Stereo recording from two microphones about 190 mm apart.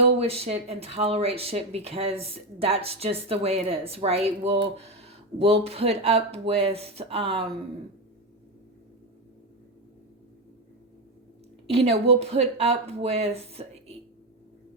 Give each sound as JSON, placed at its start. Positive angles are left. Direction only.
{"t": 0.2, "sound": "speech", "side_deg": -30}
{"t": 11.7, "sound": "speech", "side_deg": -30}